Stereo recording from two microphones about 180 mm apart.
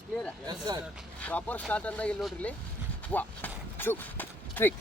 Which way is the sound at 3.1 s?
10° left (ahead or behind).